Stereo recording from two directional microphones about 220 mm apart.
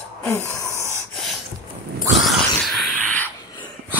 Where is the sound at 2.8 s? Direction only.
5° left (ahead or behind).